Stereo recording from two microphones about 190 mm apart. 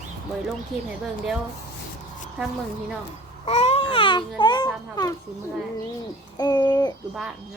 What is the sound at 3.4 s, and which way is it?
Babbling, 35° left (ahead or behind).